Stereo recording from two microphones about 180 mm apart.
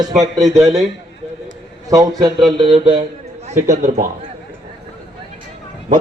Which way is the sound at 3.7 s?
40° right (ahead or behind).